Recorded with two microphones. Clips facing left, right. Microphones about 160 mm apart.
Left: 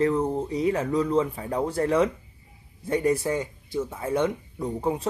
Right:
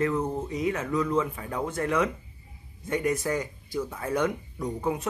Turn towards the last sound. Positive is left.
turn(degrees=30)  # may be behind; listen again after turning